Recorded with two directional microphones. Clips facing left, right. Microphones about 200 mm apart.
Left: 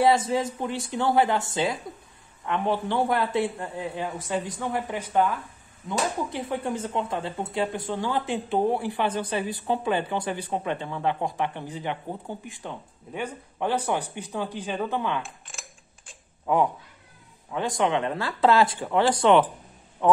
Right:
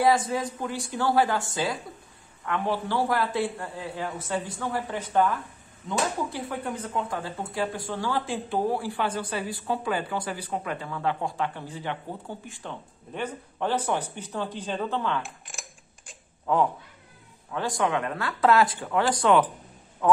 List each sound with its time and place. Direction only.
0.0 s speech: 25° left (ahead or behind)
5.9 s speech: 25° left (ahead or behind)
16.5 s a man's voice: 15° left (ahead or behind)